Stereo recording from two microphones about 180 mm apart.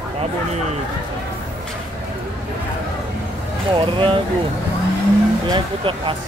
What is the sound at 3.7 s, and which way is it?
Speech, 30° right (ahead or behind).